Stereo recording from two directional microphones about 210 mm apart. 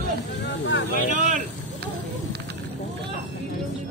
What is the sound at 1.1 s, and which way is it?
Vehicle, 35° right (ahead or behind).